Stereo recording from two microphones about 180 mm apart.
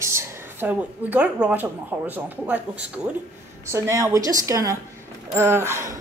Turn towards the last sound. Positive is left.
turn(degrees=-15)  # may be behind; listen again after turning